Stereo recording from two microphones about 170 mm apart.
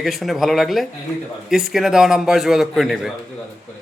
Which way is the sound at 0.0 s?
Centre (ahead or behind).